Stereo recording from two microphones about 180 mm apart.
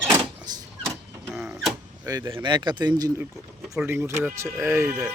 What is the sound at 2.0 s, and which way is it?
Speech, 25° right (ahead or behind).